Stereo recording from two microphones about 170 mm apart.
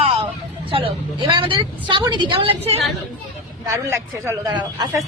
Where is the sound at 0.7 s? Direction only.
30° right (ahead or behind).